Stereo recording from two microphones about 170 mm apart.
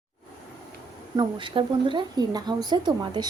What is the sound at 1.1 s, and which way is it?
A woman's voice, 25° right (ahead or behind).